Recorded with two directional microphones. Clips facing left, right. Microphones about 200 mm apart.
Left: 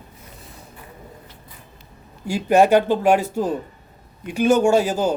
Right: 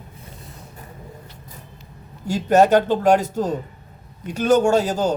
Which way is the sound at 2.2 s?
10° left (ahead or behind).